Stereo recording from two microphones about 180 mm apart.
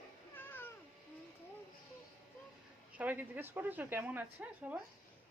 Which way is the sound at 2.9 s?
10° right (ahead or behind).